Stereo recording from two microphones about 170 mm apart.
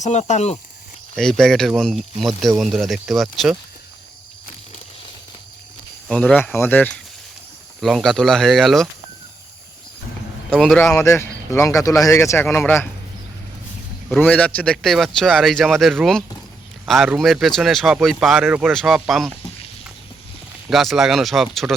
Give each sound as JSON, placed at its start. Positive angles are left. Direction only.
{"t": 0.0, "sound": "speech", "side_deg": 45}
{"t": 1.1, "sound": "speech", "side_deg": 5}
{"t": 6.1, "sound": "speech", "side_deg": 5}
{"t": 10.5, "sound": "speech", "side_deg": 0}
{"t": 10.9, "sound": "speech", "side_deg": 15}
{"t": 14.2, "sound": "speech", "side_deg": 10}
{"t": 20.7, "sound": "speech", "side_deg": 0}